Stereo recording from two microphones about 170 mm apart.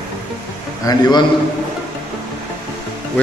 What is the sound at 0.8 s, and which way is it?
Speech, 25° left (ahead or behind).